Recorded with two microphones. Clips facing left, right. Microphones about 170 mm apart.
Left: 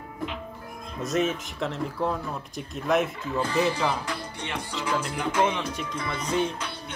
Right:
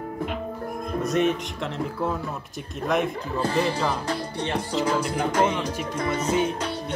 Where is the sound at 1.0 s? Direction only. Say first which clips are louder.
Right 2 dB; centre (ahead or behind).